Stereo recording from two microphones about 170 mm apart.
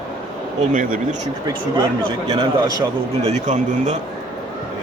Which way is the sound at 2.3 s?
25° right (ahead or behind).